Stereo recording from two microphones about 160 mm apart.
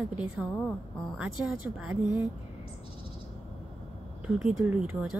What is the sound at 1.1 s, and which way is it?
A woman's voice, 5° right (ahead or behind).